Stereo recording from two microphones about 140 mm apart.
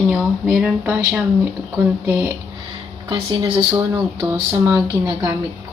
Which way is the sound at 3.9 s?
20° right (ahead or behind).